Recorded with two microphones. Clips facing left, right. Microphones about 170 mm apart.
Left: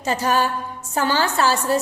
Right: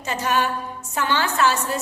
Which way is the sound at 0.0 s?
35° left (ahead or behind).